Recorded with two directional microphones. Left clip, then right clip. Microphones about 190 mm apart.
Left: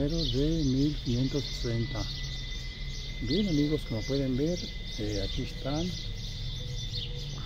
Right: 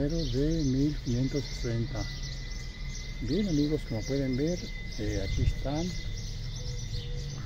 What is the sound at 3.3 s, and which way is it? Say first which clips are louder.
Speech: left 1 dB; centre (ahead or behind).